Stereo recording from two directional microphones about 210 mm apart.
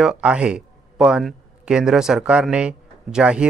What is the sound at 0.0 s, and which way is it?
A man's voice, 5° right (ahead or behind).